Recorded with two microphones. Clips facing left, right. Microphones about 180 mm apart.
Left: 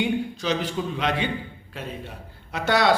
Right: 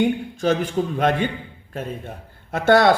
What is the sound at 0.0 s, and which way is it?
A man's voice, 50° right (ahead or behind).